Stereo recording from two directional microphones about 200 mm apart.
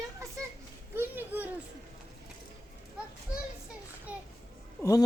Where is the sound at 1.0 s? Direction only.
10° right (ahead or behind).